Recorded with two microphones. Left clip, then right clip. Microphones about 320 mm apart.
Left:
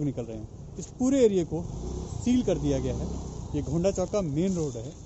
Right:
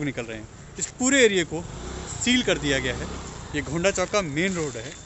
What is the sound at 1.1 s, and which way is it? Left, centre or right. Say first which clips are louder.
Speech: right 4 dB; centre.